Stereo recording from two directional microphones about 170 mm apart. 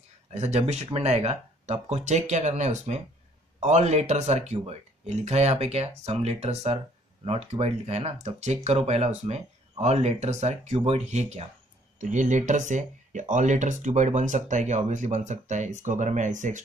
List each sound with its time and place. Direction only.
0.3 s speech: 40° right (ahead or behind)